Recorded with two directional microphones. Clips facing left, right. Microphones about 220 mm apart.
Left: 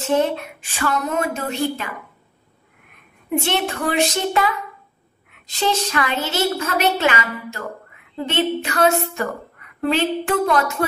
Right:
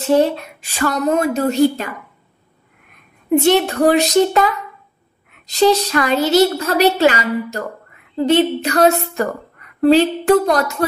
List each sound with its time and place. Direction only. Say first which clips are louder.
0.0 s a woman's voice: right 5 dB; 35° right (ahead or behind)
3.3 s a woman's voice: right 8 dB; 40° right (ahead or behind)
5.5 s a woman's voice: right 8 dB; 40° right (ahead or behind)